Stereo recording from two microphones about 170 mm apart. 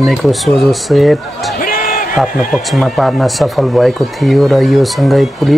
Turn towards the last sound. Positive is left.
turn(degrees=0)  # may be behind; listen again after turning